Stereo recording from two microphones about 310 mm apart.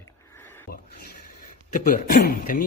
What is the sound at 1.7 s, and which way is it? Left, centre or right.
Speech, left.